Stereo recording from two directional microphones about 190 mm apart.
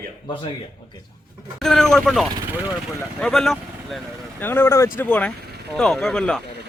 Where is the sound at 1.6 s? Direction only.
Centre (ahead or behind).